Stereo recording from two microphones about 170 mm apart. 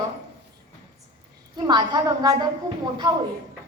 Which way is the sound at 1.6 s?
25° right (ahead or behind).